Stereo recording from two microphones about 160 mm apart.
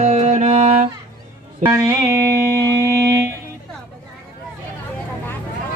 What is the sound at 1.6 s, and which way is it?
Music, 15° right (ahead or behind).